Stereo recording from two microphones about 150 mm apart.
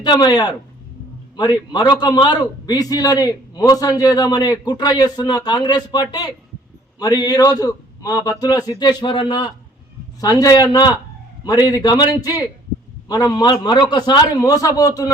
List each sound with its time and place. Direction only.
0.0 s a man's voice: 25° left (ahead or behind)